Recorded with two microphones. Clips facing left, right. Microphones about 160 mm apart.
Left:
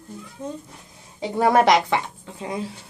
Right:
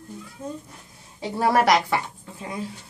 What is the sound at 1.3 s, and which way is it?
A woman's voice, 20° left (ahead or behind).